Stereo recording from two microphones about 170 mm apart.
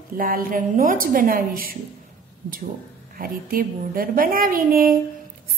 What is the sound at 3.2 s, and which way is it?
A woman's voice, 55° right (ahead or behind).